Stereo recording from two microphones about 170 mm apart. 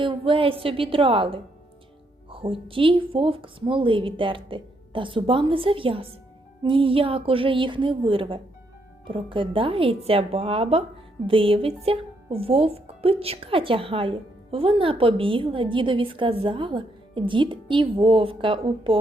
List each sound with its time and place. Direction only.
0.0 s speech: 30° right (ahead or behind)